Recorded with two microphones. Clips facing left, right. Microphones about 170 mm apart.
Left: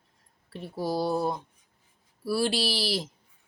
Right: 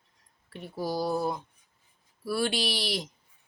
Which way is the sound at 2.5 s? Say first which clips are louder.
Left 2 dB; centre (ahead or behind).